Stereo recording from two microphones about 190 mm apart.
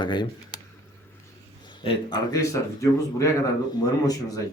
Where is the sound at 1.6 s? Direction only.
25° left (ahead or behind).